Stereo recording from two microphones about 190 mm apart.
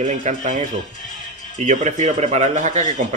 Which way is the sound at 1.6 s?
40° right (ahead or behind).